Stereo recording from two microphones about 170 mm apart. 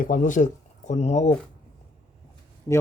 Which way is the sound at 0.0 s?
50° left (ahead or behind).